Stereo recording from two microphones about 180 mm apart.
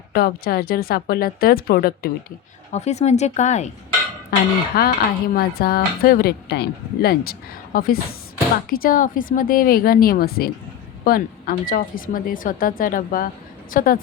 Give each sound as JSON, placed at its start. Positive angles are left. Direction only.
{"t": 0.1, "sound": "speech", "side_deg": 60}
{"t": 2.7, "sound": "speech", "side_deg": 40}
{"t": 4.3, "sound": "speech", "side_deg": 55}